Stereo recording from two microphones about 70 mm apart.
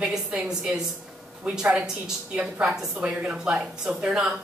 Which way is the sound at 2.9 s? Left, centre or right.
Centre.